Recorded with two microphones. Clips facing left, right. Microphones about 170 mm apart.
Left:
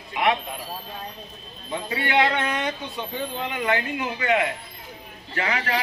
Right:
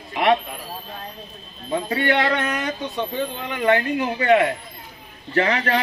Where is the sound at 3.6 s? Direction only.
40° right (ahead or behind).